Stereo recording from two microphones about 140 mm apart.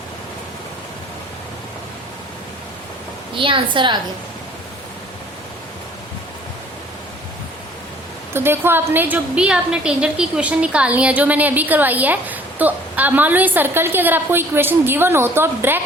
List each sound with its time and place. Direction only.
3.3 s a woman's voice: 35° right (ahead or behind)
8.3 s a woman's voice: 15° right (ahead or behind)